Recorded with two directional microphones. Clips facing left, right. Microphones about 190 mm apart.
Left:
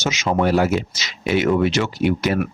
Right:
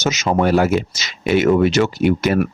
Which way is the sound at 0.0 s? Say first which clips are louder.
Right 2 dB; 45° right (ahead or behind).